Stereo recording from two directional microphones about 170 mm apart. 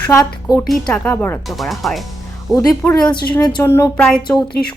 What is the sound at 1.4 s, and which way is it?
Speech, centre (ahead or behind).